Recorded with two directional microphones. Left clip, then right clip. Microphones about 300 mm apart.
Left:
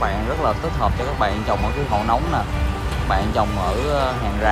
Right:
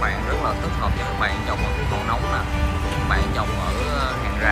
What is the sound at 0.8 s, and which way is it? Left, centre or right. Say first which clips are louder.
Speech: left 3 dB; centre.